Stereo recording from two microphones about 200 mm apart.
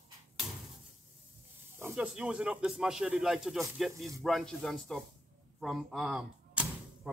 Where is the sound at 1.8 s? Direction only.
10° right (ahead or behind).